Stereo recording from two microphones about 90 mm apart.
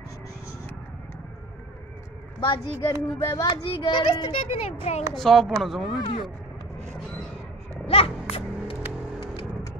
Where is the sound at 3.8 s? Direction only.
60° left (ahead or behind).